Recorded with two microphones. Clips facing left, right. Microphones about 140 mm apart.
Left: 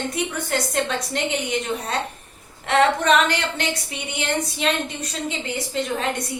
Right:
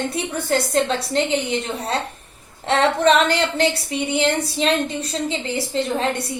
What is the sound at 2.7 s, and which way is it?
A woman's voice, 30° right (ahead or behind).